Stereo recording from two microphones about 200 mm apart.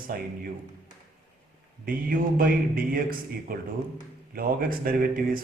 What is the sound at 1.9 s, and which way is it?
A man's voice, 45° right (ahead or behind).